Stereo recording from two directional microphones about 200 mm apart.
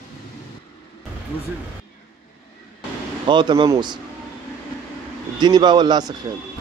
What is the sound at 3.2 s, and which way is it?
Speech, 25° right (ahead or behind).